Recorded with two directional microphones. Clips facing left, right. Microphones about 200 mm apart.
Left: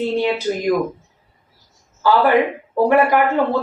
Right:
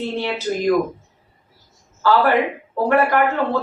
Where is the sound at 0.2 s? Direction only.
15° left (ahead or behind).